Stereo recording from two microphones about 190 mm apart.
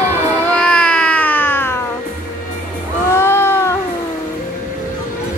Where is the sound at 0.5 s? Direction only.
5° left (ahead or behind).